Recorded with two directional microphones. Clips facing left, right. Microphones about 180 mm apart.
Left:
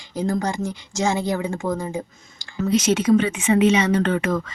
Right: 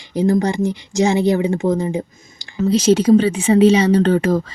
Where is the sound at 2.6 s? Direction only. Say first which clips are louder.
Right 5 dB; 30° right (ahead or behind).